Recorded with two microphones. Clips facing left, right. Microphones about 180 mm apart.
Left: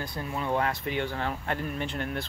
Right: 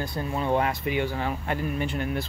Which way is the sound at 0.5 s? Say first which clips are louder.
Right 2 dB; 10° right (ahead or behind).